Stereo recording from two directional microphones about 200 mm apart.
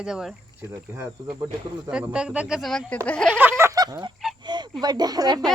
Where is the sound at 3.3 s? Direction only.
10° right (ahead or behind).